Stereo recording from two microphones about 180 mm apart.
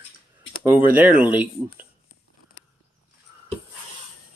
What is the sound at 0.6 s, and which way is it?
Speech, 10° right (ahead or behind).